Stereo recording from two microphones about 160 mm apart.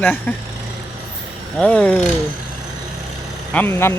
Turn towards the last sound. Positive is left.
turn(degrees=15)  # may be behind; listen again after turning